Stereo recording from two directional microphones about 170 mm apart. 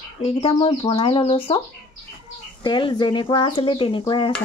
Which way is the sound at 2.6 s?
25° left (ahead or behind).